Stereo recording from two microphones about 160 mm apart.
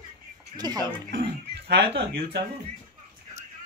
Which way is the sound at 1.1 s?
90° right.